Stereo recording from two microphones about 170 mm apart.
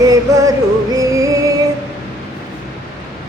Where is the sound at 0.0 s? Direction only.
20° right (ahead or behind).